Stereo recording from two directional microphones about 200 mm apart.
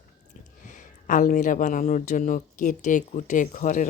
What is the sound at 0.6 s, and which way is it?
Speech, 40° left (ahead or behind).